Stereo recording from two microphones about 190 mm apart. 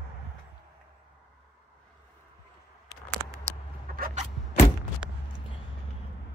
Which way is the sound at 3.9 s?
45° right (ahead or behind).